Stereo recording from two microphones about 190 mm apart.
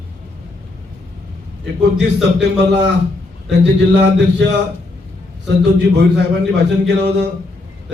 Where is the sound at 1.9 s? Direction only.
65° right (ahead or behind).